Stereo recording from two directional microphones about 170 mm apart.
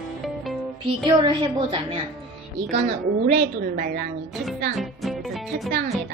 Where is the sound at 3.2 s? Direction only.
55° right (ahead or behind).